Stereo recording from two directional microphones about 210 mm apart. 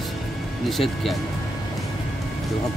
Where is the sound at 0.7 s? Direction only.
Centre (ahead or behind).